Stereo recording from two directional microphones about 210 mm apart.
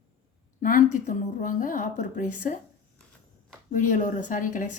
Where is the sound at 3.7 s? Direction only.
40° left (ahead or behind).